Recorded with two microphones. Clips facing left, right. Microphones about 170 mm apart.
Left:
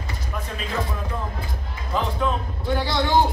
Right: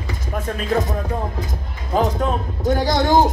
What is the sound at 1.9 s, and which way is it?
Music, 45° right (ahead or behind).